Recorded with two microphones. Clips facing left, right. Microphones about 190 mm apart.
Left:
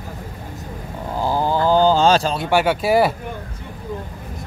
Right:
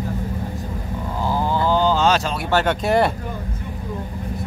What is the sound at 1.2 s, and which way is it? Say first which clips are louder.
Livestock: left 2 dB; 35° left (ahead or behind).